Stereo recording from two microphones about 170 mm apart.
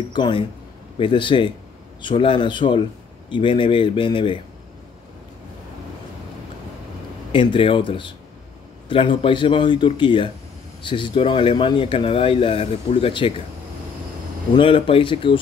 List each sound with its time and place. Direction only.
0.1 s speech: 30° left (ahead or behind)
7.3 s speech: 30° left (ahead or behind)
14.6 s speech: 30° left (ahead or behind)